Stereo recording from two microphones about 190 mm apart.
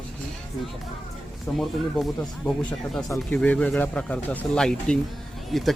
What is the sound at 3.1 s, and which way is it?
Speech, 5° left (ahead or behind).